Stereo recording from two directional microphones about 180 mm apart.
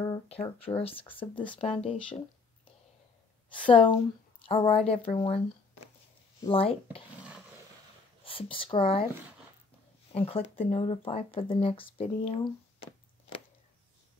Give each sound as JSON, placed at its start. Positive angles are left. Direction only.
{"t": 0.0, "sound": "speech", "side_deg": 30}
{"t": 3.4, "sound": "a woman's voice", "side_deg": 30}
{"t": 8.2, "sound": "speech", "side_deg": 30}
{"t": 10.1, "sound": "speech", "side_deg": 30}